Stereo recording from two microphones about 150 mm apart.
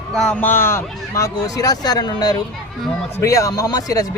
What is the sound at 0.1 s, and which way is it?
A man's voice, centre (ahead or behind).